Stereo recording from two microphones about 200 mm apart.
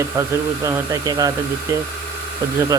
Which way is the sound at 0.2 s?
15° right (ahead or behind).